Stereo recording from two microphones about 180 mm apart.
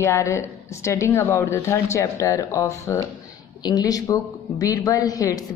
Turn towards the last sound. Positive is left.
turn(degrees=20)  # may be behind; listen again after turning